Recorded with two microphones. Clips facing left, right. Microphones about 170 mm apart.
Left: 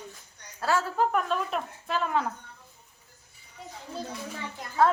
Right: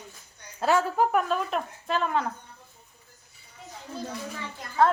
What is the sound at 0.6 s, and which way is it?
Speech, 20° right (ahead or behind).